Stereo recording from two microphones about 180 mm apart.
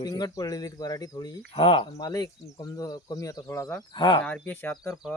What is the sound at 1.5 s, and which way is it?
Speech, 30° left (ahead or behind).